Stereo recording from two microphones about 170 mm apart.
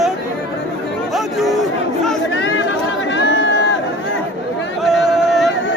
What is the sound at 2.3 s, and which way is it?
Chatter, 90° left.